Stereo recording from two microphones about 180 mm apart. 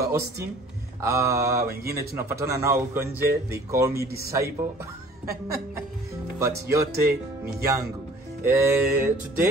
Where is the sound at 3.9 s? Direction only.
60° right (ahead or behind).